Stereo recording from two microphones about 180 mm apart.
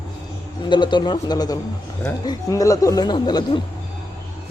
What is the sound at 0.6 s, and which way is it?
Speech, 25° left (ahead or behind).